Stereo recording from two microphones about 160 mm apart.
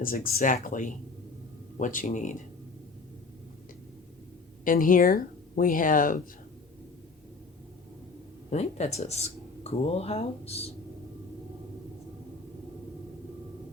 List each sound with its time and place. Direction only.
0.0 s speech: 60° left (ahead or behind)
4.6 s speech: 60° left (ahead or behind)
8.4 s speech: 45° left (ahead or behind)